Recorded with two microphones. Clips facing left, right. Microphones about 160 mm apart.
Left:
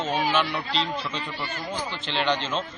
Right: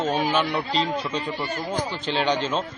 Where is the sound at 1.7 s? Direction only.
10° right (ahead or behind).